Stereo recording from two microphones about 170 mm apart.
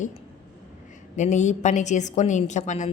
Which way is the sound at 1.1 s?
45° left (ahead or behind).